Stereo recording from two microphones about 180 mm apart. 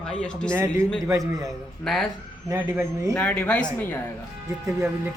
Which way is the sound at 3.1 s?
10° left (ahead or behind).